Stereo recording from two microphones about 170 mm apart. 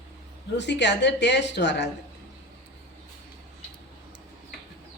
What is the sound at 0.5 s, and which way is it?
Speech, 90° left.